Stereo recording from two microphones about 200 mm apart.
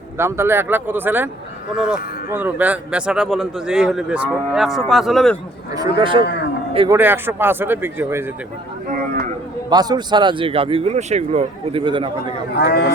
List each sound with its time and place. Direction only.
0.2 s a man's voice: 15° right (ahead or behind)
6.0 s a man's voice: 25° right (ahead or behind)
9.6 s speech: 20° right (ahead or behind)
12.5 s speech: 55° left (ahead or behind)